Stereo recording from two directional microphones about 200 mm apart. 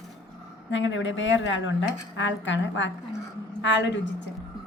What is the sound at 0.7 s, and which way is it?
A woman's voice, 65° left (ahead or behind).